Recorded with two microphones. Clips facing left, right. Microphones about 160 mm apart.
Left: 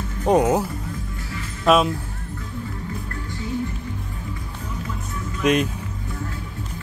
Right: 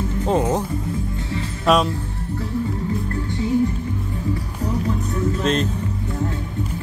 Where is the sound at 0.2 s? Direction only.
15° left (ahead or behind).